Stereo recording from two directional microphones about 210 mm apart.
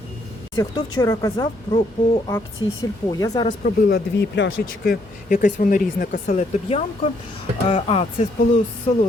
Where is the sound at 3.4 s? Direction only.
40° left (ahead or behind).